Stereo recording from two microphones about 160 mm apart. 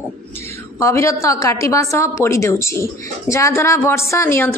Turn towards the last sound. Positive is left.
turn(degrees=15)  # may be behind; listen again after turning